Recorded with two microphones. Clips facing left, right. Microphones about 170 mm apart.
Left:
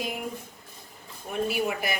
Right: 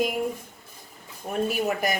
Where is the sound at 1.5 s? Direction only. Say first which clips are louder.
Right 3 dB; 45° right (ahead or behind).